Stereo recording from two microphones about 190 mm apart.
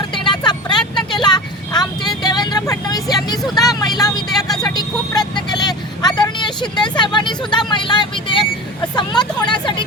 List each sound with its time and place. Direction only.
0.1 s vehicle: 25° left (ahead or behind)